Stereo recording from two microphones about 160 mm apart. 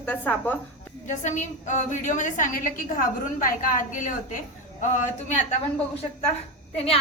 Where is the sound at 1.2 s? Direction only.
50° left (ahead or behind).